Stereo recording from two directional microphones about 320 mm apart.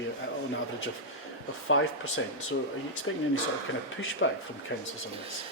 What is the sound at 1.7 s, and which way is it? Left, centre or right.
Speech, left.